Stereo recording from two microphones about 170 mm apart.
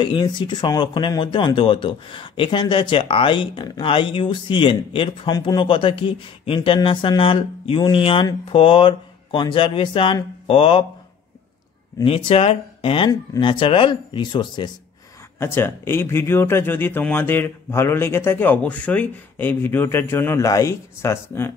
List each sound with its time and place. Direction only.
0.0 s speech: 25° left (ahead or behind)
12.0 s speech: 35° left (ahead or behind)
15.3 s speech: 15° left (ahead or behind)